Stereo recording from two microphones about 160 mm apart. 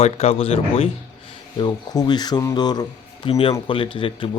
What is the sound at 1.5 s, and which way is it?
Speech, 25° left (ahead or behind).